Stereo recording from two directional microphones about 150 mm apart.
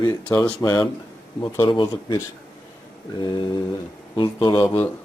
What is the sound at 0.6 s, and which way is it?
Speech, 20° left (ahead or behind).